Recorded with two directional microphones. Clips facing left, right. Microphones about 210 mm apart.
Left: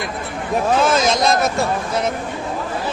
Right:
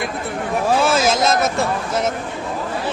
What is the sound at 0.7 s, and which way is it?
Speech, 10° right (ahead or behind).